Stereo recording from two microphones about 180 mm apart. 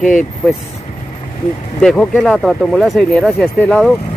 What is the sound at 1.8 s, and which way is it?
Speech, 5° left (ahead or behind).